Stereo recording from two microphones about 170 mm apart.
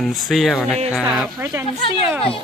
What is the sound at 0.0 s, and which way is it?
Speech, centre (ahead or behind).